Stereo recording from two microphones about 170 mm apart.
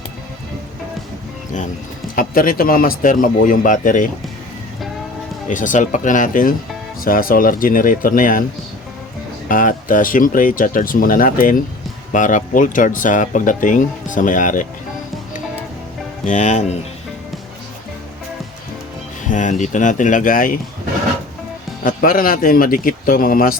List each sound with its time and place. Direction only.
2.1 s speech: 55° left (ahead or behind)
5.5 s speech: 50° left (ahead or behind)
9.5 s speech: 50° left (ahead or behind)
16.2 s speech: 45° left (ahead or behind)
19.3 s speech: 45° left (ahead or behind)
21.8 s speech: 55° left (ahead or behind)